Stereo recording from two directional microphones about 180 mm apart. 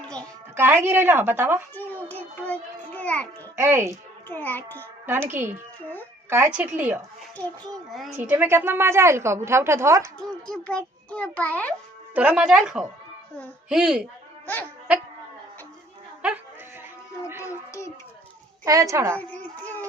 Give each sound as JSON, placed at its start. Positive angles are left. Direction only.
{"t": 0.2, "sound": "a woman's voice", "side_deg": -15}
{"t": 1.7, "sound": "a child's voice", "side_deg": 10}
{"t": 3.5, "sound": "a woman's voice", "side_deg": -15}
{"t": 4.3, "sound": "a child's voice", "side_deg": 10}
{"t": 5.3, "sound": "a woman's voice", "side_deg": -10}
{"t": 8.1, "sound": "a woman's voice", "side_deg": -10}
{"t": 10.2, "sound": "a child's voice", "side_deg": 5}
{"t": 12.1, "sound": "speech", "side_deg": -5}
{"t": 14.4, "sound": "music", "side_deg": 10}
{"t": 17.7, "sound": "a sound", "side_deg": 15}
{"t": 18.6, "sound": "a woman's voice", "side_deg": -15}
{"t": 19.2, "sound": "baby cry", "side_deg": 10}